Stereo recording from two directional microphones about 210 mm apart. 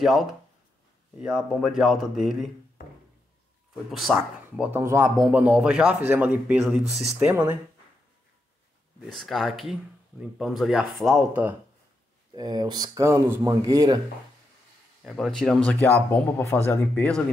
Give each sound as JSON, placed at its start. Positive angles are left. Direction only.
{"t": 0.0, "sound": "speech", "side_deg": 0}
{"t": 3.9, "sound": "a man's voice", "side_deg": 0}
{"t": 9.1, "sound": "speech", "side_deg": 0}
{"t": 12.4, "sound": "a man's voice", "side_deg": -20}
{"t": 15.0, "sound": "speech", "side_deg": 0}